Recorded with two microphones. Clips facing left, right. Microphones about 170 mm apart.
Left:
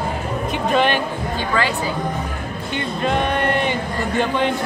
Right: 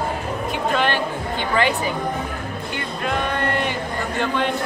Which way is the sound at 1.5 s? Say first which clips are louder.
Right 2 dB; 20° right (ahead or behind).